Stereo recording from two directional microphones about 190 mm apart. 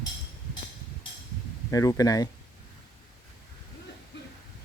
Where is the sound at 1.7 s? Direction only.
20° left (ahead or behind).